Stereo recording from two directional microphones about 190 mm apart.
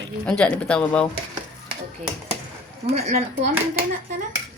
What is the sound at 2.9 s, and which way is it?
Speech, 40° right (ahead or behind).